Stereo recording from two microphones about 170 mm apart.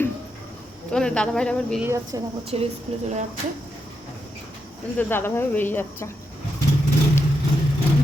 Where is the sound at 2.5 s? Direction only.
35° right (ahead or behind).